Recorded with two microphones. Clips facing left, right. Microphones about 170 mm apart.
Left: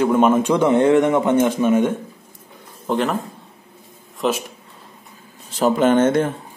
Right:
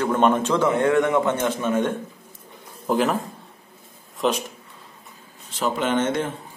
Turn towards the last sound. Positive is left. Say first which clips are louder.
# left 7 dB
turn(degrees=45)  # may be behind; listen again after turning